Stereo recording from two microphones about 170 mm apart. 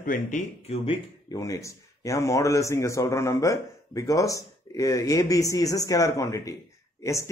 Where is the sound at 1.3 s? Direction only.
20° left (ahead or behind).